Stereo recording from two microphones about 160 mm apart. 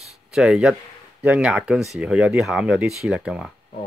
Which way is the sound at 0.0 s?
Centre (ahead or behind).